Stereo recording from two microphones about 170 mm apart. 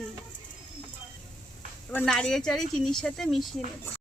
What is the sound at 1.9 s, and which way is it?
Speech, 10° left (ahead or behind).